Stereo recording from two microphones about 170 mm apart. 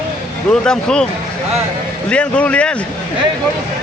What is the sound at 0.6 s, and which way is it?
Speech, 5° left (ahead or behind).